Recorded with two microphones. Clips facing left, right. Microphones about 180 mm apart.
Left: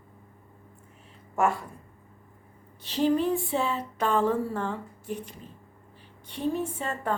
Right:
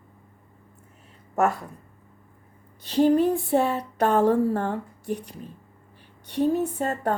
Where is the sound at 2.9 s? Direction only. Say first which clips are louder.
Right 5 dB; 50° right (ahead or behind).